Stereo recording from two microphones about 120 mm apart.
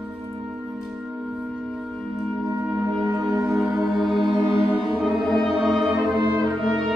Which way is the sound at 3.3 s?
25° right (ahead or behind).